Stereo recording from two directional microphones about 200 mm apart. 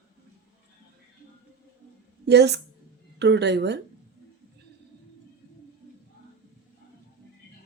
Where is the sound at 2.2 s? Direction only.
55° right (ahead or behind).